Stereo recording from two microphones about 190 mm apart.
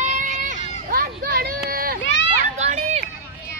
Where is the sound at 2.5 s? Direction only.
35° right (ahead or behind).